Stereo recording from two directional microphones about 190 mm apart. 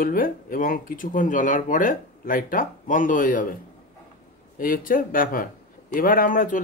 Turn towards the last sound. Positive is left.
turn(degrees=45)  # may be behind; listen again after turning